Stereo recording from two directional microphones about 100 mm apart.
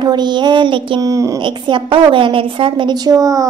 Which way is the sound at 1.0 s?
35° right (ahead or behind).